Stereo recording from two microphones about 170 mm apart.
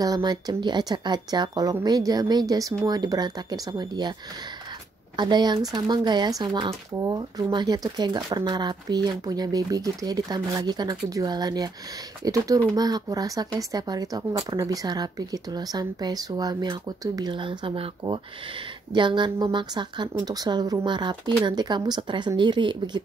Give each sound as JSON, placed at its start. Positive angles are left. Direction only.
{"t": 0.0, "sound": "speech", "side_deg": -25}
{"t": 5.1, "sound": "speech", "side_deg": -25}